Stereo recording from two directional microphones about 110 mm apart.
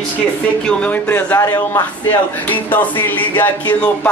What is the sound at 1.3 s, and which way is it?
Speech, 35° left (ahead or behind).